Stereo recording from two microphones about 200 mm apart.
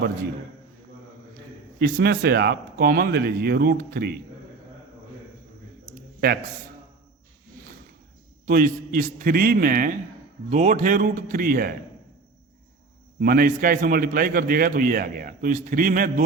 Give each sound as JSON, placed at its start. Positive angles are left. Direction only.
{"t": 1.8, "sound": "a man's voice", "side_deg": -50}
{"t": 5.8, "sound": "a sound", "side_deg": -50}
{"t": 8.4, "sound": "a man's voice", "side_deg": -45}
{"t": 13.1, "sound": "a man's voice", "side_deg": -45}